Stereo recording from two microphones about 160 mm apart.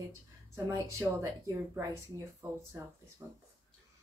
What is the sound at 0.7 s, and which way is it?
Speech, 20° right (ahead or behind).